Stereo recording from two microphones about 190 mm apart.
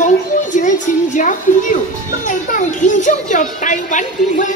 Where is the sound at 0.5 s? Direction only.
40° left (ahead or behind).